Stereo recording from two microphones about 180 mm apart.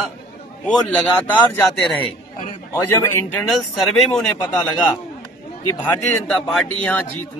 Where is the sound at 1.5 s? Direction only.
15° left (ahead or behind).